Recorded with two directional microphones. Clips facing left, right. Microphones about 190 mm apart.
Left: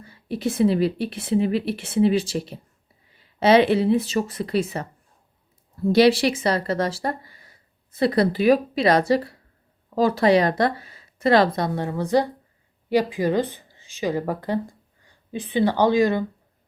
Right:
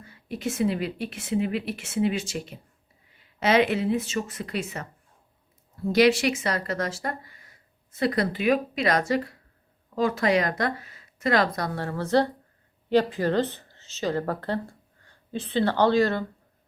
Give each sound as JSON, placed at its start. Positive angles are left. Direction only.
{"t": 0.0, "sound": "a woman's voice", "side_deg": 30}
{"t": 5.9, "sound": "a woman's voice", "side_deg": 30}